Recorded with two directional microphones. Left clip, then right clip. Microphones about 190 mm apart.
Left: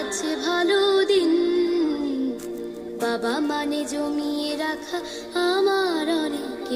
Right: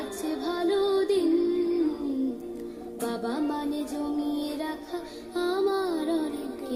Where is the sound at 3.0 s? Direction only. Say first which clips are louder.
Left 6 dB; 35° left (ahead or behind).